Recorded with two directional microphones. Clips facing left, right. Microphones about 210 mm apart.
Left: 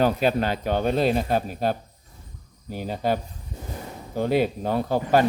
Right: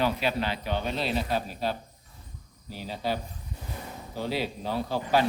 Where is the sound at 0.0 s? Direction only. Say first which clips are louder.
Left 6 dB; 45° left (ahead or behind).